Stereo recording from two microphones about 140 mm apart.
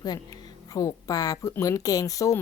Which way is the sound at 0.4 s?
25° left (ahead or behind).